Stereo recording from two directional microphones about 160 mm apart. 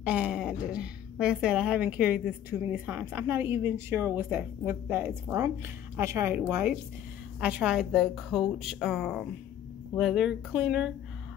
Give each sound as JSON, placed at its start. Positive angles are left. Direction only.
{"t": 0.0, "sound": "a woman's voice", "side_deg": -5}